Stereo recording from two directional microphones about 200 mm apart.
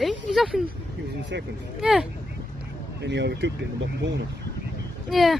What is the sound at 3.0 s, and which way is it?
Speech, 60° right (ahead or behind).